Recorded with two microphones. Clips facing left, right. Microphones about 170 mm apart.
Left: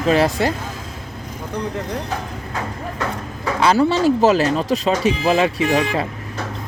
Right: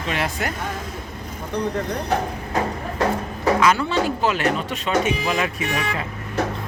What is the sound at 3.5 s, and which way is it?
Speech, 35° left (ahead or behind).